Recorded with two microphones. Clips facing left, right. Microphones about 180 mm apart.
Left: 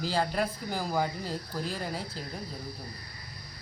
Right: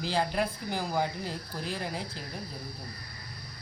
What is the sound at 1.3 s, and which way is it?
Speech, 35° left (ahead or behind).